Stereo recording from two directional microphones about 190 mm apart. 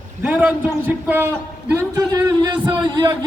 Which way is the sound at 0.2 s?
10° right (ahead or behind).